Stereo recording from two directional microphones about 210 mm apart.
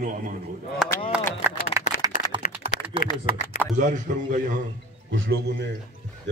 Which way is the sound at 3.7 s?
35° right (ahead or behind).